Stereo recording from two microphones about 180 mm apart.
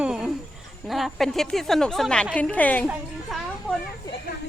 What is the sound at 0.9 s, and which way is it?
A woman's voice, centre (ahead or behind).